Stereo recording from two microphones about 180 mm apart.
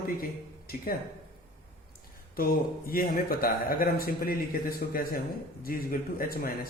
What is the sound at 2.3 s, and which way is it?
A man's voice, 55° left (ahead or behind).